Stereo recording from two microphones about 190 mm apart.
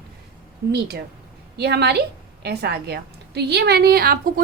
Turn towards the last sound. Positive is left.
turn(degrees=-50)  # may be behind; listen again after turning